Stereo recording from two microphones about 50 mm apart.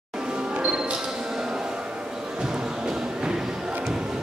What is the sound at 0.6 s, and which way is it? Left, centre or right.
Music, centre.